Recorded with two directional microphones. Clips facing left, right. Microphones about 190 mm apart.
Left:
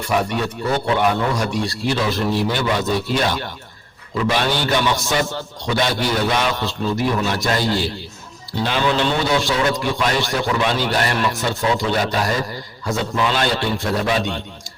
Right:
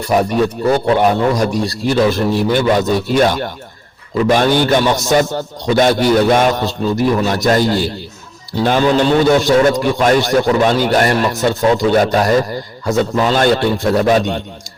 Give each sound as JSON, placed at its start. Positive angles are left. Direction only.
{"t": 0.0, "sound": "a man's voice", "side_deg": -40}